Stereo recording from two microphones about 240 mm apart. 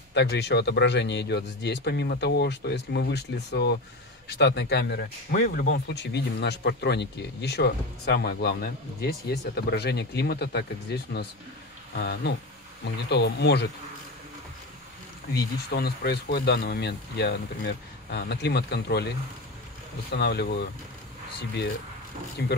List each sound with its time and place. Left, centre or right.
0.1 s speech: left
15.3 s speech: left
22.4 s speech: left